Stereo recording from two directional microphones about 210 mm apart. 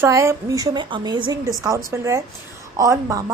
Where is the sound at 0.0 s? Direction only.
15° right (ahead or behind).